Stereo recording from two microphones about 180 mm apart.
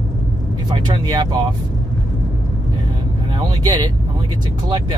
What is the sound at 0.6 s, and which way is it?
Speech, 25° right (ahead or behind).